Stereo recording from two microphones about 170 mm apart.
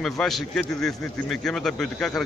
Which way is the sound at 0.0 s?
Centre (ahead or behind).